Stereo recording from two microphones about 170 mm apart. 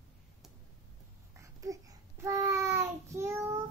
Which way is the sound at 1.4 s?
20° right (ahead or behind).